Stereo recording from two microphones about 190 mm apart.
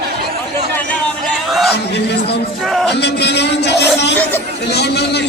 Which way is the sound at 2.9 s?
60° left (ahead or behind).